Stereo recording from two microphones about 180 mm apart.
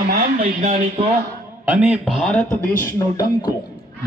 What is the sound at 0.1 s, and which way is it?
Speech, 60° right (ahead or behind).